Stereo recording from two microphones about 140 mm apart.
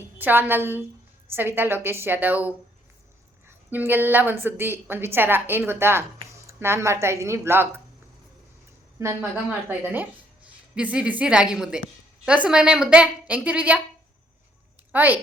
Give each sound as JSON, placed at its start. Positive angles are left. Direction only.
{"t": 0.2, "sound": "a woman's voice", "side_deg": -15}
{"t": 9.0, "sound": "a woman's voice", "side_deg": -20}
{"t": 14.9, "sound": "a woman's voice", "side_deg": -15}